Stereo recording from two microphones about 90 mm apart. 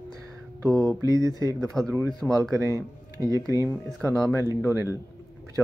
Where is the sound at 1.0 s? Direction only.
40° right (ahead or behind).